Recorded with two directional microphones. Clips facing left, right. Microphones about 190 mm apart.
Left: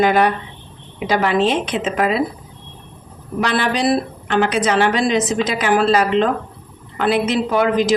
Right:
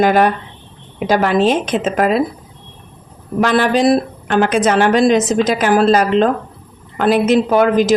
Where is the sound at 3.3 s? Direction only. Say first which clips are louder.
Right 5 dB; 45° right (ahead or behind).